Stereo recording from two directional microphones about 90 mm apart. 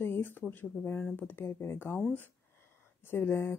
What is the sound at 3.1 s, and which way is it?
Speech, 25° left (ahead or behind).